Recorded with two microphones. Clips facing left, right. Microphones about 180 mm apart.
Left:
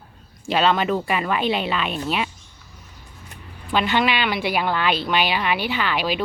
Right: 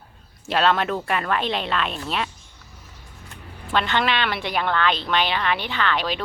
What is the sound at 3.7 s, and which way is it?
A woman's voice, 5° left (ahead or behind).